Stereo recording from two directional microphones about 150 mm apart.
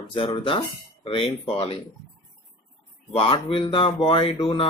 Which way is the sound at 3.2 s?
35° left (ahead or behind).